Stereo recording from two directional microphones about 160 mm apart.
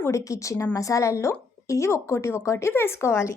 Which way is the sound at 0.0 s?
20° left (ahead or behind).